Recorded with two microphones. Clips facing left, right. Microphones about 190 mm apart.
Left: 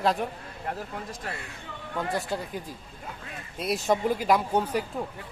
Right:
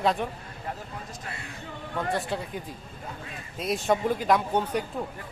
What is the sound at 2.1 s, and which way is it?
A man's voice, centre (ahead or behind).